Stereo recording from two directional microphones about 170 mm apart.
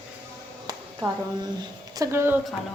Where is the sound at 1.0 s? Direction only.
15° right (ahead or behind).